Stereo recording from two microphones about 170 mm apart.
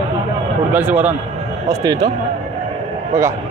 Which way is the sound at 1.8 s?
25° right (ahead or behind).